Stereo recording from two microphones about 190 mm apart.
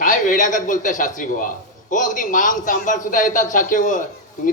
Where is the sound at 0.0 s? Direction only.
45° left (ahead or behind).